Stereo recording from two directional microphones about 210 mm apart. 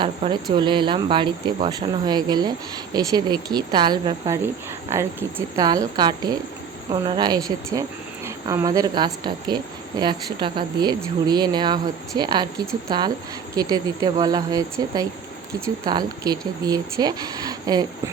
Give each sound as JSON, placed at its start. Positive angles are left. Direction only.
{"t": 0.0, "sound": "a woman's voice", "side_deg": -20}
{"t": 5.5, "sound": "a woman's voice", "side_deg": -15}